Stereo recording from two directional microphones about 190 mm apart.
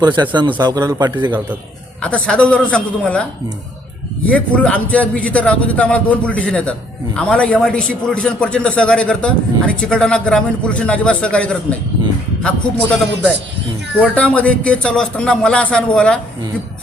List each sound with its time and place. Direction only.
0.0 s speech: 25° right (ahead or behind)
2.0 s a man's voice: 5° left (ahead or behind)
4.3 s a man's voice: 5° left (ahead or behind)
14.0 s a man's voice: 5° left (ahead or behind)